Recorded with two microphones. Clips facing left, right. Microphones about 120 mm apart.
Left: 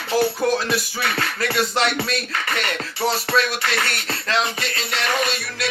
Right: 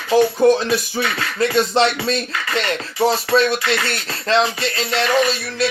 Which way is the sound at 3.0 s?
25° right (ahead or behind).